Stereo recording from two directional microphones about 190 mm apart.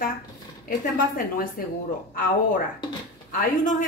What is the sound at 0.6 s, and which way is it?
Speech, 45° left (ahead or behind).